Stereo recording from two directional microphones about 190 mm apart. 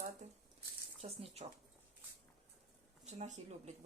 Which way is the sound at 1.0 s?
30° right (ahead or behind).